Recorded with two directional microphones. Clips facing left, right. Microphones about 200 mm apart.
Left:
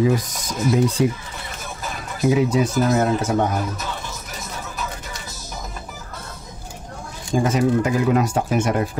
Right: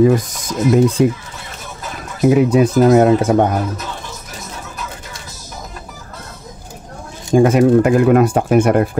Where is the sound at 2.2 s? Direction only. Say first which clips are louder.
Right 6 dB; 60° right (ahead or behind).